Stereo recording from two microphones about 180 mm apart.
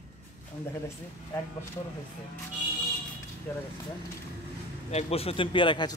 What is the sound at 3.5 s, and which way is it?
Speech, 10° left (ahead or behind).